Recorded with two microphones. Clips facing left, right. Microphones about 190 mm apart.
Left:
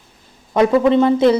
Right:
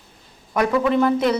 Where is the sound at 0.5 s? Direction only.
25° left (ahead or behind).